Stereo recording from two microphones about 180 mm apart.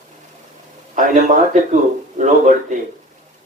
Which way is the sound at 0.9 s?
40° right (ahead or behind).